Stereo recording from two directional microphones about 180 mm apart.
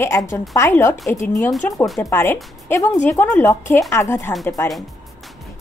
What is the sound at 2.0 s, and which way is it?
Speech, 10° left (ahead or behind).